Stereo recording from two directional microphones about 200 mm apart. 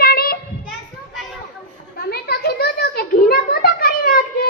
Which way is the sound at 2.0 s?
50° left (ahead or behind).